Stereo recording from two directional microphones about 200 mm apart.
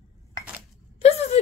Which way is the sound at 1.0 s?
30° left (ahead or behind).